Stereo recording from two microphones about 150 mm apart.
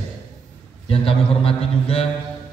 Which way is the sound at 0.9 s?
40° left (ahead or behind).